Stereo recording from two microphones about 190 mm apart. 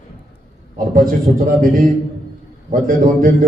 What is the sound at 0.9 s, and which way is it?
A man's voice, 45° right (ahead or behind).